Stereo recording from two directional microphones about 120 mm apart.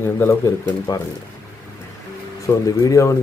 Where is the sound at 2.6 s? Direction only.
30° left (ahead or behind).